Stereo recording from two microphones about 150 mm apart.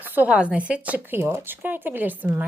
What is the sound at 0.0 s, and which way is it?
Speech, 10° right (ahead or behind).